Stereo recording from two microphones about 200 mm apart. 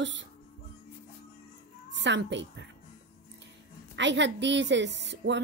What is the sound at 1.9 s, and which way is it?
Speech, 60° right (ahead or behind).